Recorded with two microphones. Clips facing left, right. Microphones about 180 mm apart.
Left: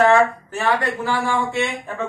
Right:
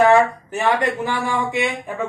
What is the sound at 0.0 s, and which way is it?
A man's voice, 15° right (ahead or behind).